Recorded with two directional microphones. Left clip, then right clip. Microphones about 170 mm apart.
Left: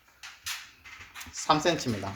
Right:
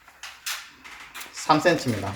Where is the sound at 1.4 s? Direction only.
35° left (ahead or behind).